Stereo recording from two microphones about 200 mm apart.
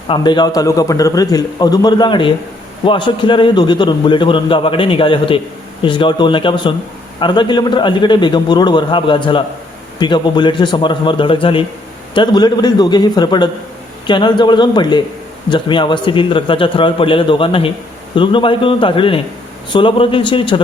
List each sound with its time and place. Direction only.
0.1 s a man's voice: 20° left (ahead or behind)